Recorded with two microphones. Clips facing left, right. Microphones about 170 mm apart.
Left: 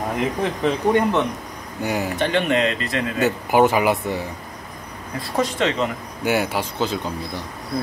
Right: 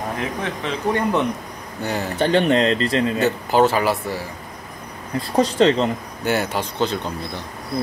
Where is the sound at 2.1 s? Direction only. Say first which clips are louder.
Right 5 dB; 35° right (ahead or behind).